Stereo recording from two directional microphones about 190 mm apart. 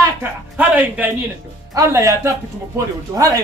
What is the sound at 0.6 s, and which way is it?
A man's voice, 10° right (ahead or behind).